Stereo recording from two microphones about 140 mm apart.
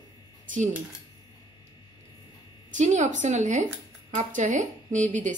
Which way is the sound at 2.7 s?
60° right (ahead or behind).